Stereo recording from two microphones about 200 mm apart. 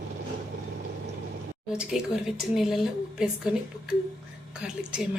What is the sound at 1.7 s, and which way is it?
A woman's voice, 5° right (ahead or behind).